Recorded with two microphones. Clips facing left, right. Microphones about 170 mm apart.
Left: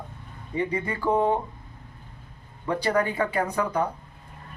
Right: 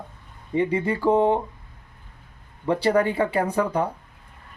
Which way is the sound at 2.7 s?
30° right (ahead or behind).